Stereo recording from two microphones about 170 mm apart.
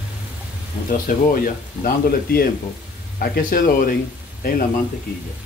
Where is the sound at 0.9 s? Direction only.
55° left (ahead or behind).